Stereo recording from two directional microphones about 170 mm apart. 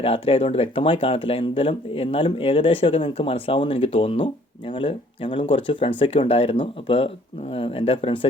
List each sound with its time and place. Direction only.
0.0 s speech: 35° left (ahead or behind)